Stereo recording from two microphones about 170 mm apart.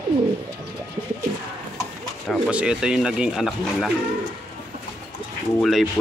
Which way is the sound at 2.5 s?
5° right (ahead or behind).